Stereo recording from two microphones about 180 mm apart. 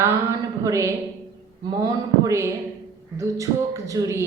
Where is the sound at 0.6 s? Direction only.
15° right (ahead or behind).